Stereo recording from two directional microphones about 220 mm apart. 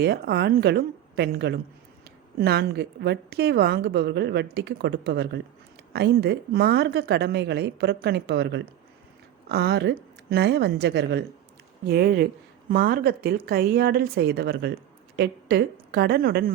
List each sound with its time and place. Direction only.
0.0 s a woman's voice: 45° right (ahead or behind)